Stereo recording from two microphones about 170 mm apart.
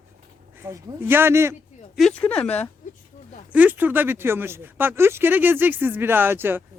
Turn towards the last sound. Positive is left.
turn(degrees=-10)  # may be behind; listen again after turning